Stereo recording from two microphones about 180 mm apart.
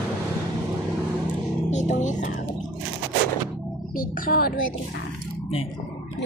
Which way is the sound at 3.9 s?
50° left (ahead or behind).